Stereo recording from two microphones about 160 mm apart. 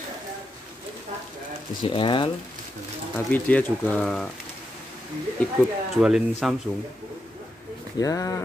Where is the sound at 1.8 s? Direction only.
30° left (ahead or behind).